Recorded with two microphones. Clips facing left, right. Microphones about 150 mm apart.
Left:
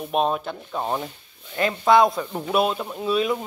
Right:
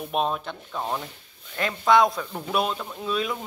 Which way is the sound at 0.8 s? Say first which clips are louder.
Left 3 dB; 20° left (ahead or behind).